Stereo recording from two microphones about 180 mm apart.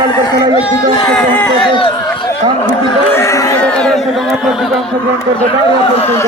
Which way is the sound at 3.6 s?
5° left (ahead or behind).